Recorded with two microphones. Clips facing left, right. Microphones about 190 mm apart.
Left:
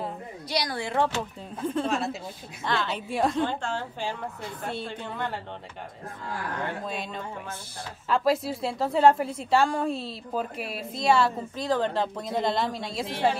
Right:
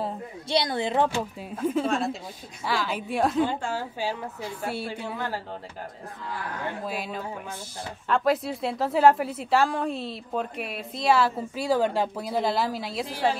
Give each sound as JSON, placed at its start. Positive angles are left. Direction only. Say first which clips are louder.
{"t": 0.0, "sound": "a woman's voice", "louder": "right 3 dB", "side_deg": -25}
{"t": 6.9, "sound": "a woman's voice", "louder": "right 2 dB", "side_deg": -5}